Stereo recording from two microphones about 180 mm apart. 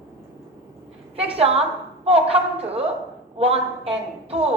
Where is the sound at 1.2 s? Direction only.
35° right (ahead or behind).